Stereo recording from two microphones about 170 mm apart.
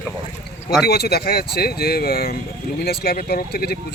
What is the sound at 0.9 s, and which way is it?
Speech, 70° left (ahead or behind).